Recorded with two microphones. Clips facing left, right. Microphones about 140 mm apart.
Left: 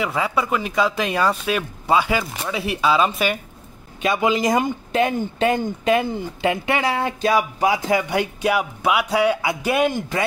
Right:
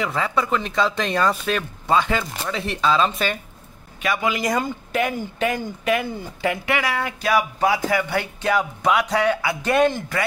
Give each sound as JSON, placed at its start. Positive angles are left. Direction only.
{"t": 0.0, "sound": "speech", "side_deg": 10}
{"t": 4.0, "sound": "speech", "side_deg": 25}